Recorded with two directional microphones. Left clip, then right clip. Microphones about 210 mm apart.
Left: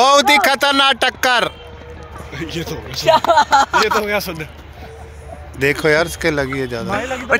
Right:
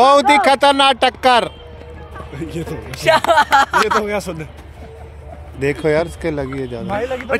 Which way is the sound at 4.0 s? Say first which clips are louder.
Left 2 dB; 55° right (ahead or behind).